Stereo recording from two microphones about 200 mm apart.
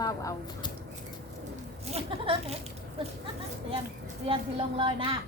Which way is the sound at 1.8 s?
30° right (ahead or behind).